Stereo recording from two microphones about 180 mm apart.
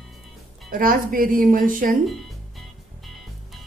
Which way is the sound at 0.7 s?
50° right (ahead or behind).